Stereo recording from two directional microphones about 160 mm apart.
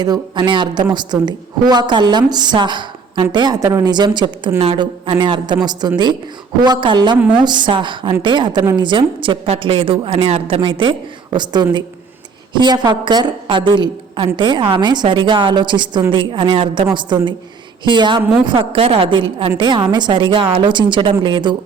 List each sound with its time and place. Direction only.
0.0 s a woman's voice: 25° right (ahead or behind)